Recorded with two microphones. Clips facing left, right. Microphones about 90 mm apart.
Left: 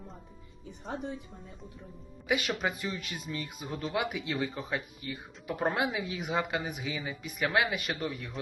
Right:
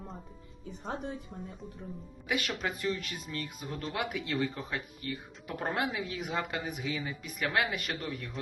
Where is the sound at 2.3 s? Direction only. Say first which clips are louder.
Left 3 dB; 10° left (ahead or behind).